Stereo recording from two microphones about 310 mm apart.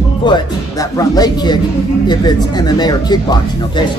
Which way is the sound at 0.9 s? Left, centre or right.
Centre.